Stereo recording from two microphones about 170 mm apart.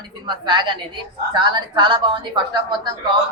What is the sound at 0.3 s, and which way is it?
A man's voice, 25° right (ahead or behind).